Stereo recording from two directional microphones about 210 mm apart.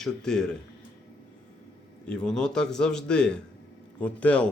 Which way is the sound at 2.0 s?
5° left (ahead or behind).